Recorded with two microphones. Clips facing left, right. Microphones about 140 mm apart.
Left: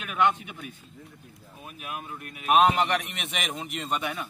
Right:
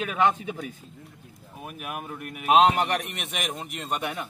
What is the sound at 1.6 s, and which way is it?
Speech, 60° right (ahead or behind).